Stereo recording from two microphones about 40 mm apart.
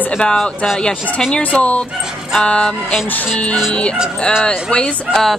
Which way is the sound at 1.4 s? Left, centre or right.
Left.